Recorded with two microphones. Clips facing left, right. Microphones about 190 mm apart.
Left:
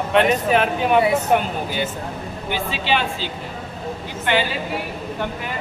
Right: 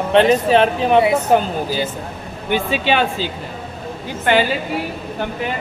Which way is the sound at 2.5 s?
55° right (ahead or behind).